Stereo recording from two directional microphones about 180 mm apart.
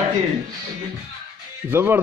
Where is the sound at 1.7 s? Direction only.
10° right (ahead or behind).